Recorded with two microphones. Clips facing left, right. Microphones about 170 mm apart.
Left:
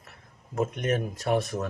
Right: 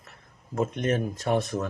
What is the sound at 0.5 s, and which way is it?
Speech, 15° left (ahead or behind).